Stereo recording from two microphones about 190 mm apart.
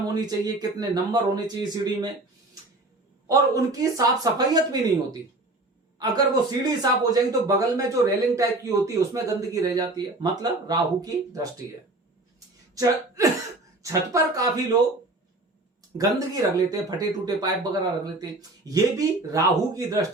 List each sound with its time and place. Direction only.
0.1 s speech: 20° right (ahead or behind)
3.2 s speech: 15° right (ahead or behind)
6.0 s speech: 20° right (ahead or behind)
12.7 s speech: 20° right (ahead or behind)
16.0 s speech: 20° right (ahead or behind)